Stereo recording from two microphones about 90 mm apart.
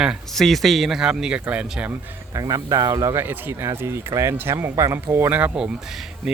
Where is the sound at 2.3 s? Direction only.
40° right (ahead or behind).